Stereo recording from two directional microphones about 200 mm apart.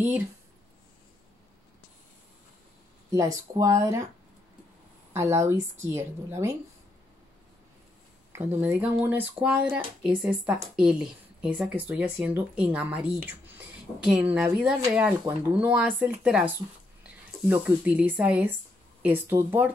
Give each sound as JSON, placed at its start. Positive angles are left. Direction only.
{"t": 3.1, "sound": "speech", "side_deg": -15}
{"t": 5.1, "sound": "speech", "side_deg": -15}
{"t": 8.3, "sound": "speech", "side_deg": -10}
{"t": 14.0, "sound": "speech", "side_deg": -5}